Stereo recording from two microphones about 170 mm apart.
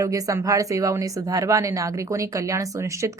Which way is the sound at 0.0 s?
20° right (ahead or behind).